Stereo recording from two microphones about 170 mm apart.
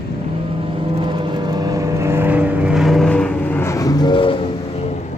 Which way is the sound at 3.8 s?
25° left (ahead or behind).